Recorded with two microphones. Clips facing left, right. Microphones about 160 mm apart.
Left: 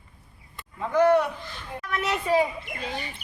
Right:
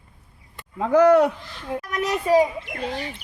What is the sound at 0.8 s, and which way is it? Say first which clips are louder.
Speech: right 5 dB; 90° right.